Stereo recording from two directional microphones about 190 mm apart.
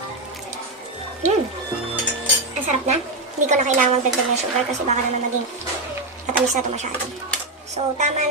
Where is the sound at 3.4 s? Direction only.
40° right (ahead or behind).